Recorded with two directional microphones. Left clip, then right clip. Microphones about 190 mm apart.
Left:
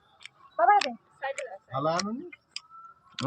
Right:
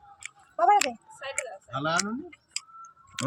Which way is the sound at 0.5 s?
40° right (ahead or behind).